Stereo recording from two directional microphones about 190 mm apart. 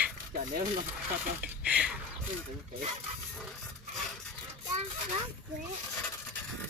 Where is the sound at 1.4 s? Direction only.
5° right (ahead or behind).